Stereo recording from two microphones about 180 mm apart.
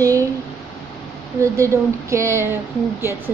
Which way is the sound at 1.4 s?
15° right (ahead or behind).